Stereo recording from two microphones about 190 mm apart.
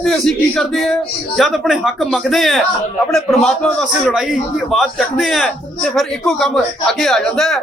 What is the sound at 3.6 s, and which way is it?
A man's voice, 5° left (ahead or behind).